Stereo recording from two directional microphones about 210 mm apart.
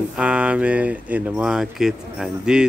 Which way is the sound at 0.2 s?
5° right (ahead or behind).